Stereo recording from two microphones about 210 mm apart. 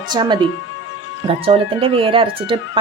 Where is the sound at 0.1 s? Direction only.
20° right (ahead or behind).